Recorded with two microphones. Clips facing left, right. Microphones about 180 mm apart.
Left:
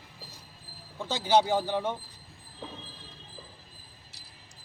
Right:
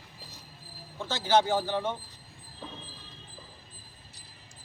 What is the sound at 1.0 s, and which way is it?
Speech, 10° left (ahead or behind).